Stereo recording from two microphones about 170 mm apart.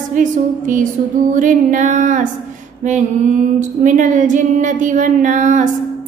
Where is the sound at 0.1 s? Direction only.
50° right (ahead or behind).